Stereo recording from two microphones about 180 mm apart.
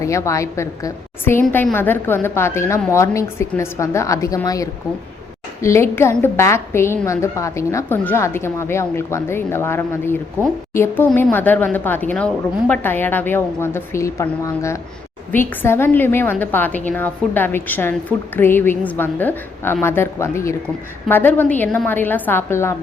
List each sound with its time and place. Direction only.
0.0 s a woman's voice: 15° left (ahead or behind)